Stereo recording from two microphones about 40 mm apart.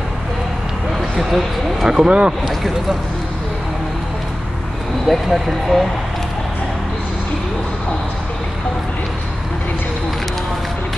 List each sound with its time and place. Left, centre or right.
1.1 s speech: centre
1.9 s speech: right
5.0 s speech: centre